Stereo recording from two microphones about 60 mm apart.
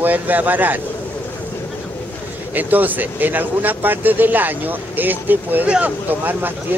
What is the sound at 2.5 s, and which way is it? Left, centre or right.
Speech, right.